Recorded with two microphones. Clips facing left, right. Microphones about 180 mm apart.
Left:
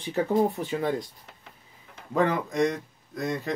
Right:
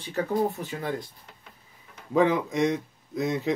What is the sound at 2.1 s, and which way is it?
A man's voice, 5° right (ahead or behind).